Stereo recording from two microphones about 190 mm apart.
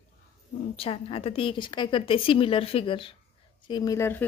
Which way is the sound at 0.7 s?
30° left (ahead or behind).